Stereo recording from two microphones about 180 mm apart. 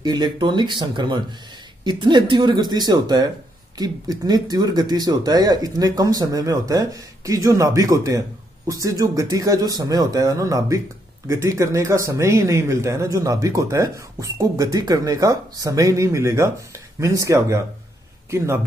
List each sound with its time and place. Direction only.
0.0 s speech: 25° right (ahead or behind)